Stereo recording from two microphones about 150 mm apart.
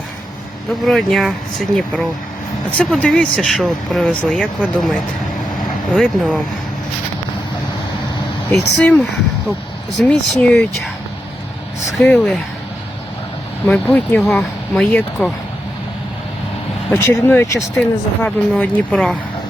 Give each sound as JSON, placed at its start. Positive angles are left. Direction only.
{"t": 0.9, "sound": "speech", "side_deg": 0}
{"t": 8.5, "sound": "speech", "side_deg": 5}
{"t": 11.9, "sound": "speech", "side_deg": 0}
{"t": 13.7, "sound": "speech", "side_deg": 5}
{"t": 16.9, "sound": "speech", "side_deg": 15}